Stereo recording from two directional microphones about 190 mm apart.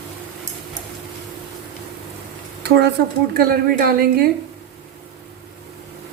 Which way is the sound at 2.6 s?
60° right (ahead or behind).